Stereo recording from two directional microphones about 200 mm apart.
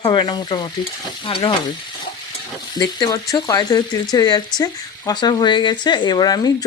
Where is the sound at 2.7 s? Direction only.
20° left (ahead or behind).